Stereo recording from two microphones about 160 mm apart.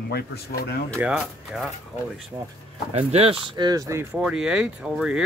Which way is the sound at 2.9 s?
40° right (ahead or behind).